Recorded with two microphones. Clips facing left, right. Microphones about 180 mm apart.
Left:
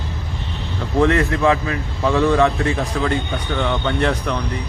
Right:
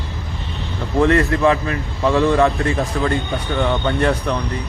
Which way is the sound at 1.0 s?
Centre (ahead or behind).